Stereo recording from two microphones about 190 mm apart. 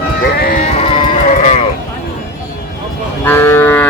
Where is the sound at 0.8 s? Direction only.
25° left (ahead or behind).